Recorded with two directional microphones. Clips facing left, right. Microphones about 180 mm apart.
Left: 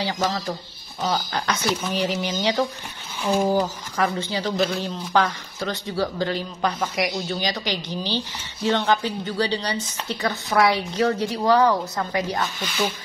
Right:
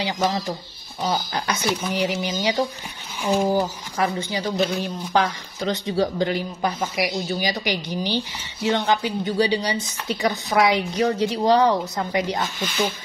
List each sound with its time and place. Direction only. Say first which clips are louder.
0.0 s speech: right 1 dB; 10° right (ahead or behind)
3.5 s speech: even; 10° right (ahead or behind)